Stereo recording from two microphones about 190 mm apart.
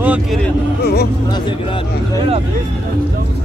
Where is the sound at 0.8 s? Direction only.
55° left (ahead or behind).